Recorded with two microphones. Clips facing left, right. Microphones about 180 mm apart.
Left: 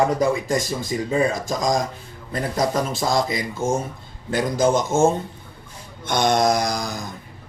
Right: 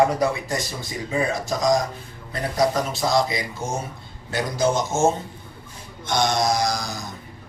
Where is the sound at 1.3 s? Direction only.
45° left (ahead or behind).